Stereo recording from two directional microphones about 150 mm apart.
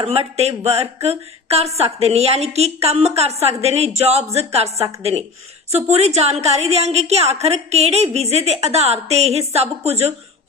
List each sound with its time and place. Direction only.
0.0 s a woman's voice: 45° right (ahead or behind)
5.7 s a woman's voice: 45° right (ahead or behind)